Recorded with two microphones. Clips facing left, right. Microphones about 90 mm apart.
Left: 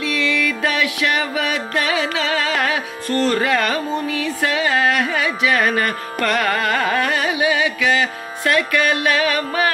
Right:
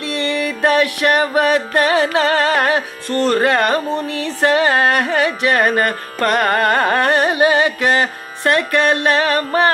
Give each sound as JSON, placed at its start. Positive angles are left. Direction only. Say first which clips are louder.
{"t": 0.2, "sound": "music", "louder": "right 5 dB", "side_deg": -45}
{"t": 3.7, "sound": "music", "louder": "right 3 dB", "side_deg": -60}